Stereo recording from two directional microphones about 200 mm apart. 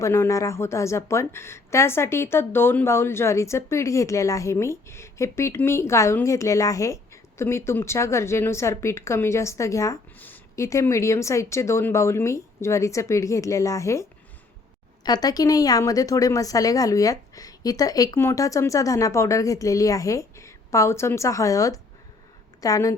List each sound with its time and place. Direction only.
0.0 s a woman's voice: 15° left (ahead or behind)